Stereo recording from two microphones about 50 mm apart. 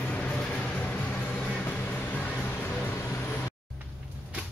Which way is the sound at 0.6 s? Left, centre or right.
Left.